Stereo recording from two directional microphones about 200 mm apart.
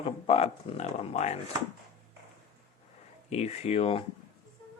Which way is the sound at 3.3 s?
30° left (ahead or behind).